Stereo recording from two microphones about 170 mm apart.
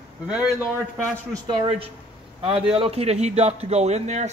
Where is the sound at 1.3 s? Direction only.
25° right (ahead or behind).